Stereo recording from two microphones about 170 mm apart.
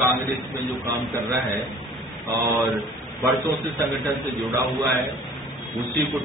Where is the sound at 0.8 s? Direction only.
15° right (ahead or behind).